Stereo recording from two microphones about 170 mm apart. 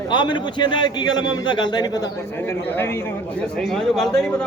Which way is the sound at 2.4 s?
10° left (ahead or behind).